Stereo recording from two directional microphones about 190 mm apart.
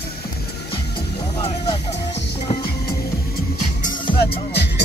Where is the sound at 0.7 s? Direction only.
25° left (ahead or behind).